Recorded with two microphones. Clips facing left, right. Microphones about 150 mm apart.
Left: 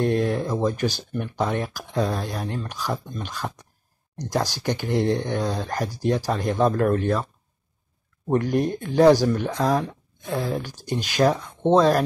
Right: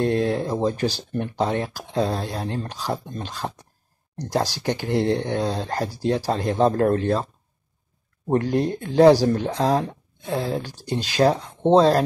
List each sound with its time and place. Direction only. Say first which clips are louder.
0.0 s speech: right 1 dB; 25° right (ahead or behind)
8.3 s speech: right 1 dB; 30° right (ahead or behind)